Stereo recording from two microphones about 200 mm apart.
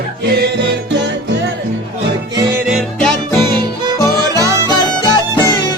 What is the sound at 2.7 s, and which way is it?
Music, 5° right (ahead or behind).